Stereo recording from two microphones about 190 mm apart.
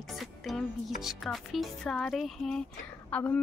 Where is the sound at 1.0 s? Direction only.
Centre (ahead or behind).